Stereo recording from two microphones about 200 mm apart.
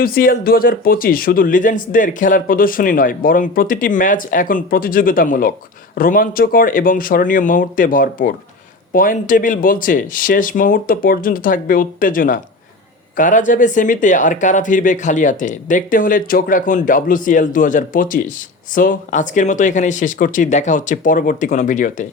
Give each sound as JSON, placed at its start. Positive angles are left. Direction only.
{"t": 0.0, "sound": "speech", "side_deg": 45}